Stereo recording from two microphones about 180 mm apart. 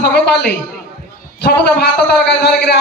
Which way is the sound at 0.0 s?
65° left (ahead or behind).